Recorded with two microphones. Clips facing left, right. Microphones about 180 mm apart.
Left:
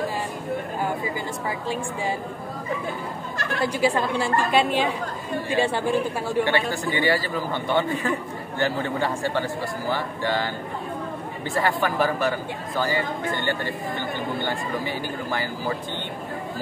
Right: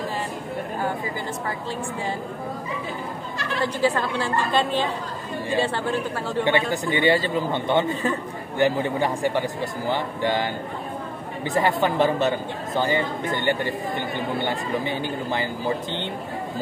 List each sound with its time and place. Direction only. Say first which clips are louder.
3.6 s a woman's voice: left 1 dB; 10° left (ahead or behind)
6.4 s a man's voice: right 5 dB; 20° right (ahead or behind)